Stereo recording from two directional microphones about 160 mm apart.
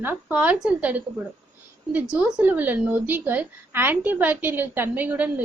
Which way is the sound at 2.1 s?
5° right (ahead or behind).